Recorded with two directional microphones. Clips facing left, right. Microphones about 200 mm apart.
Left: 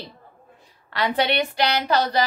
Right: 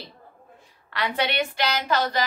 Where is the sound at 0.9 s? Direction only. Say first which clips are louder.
Left 4 dB; 35° left (ahead or behind).